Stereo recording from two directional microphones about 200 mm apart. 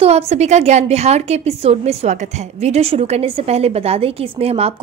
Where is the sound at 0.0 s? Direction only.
30° right (ahead or behind).